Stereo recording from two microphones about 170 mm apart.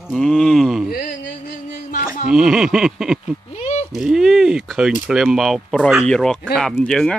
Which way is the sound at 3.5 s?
40° left (ahead or behind).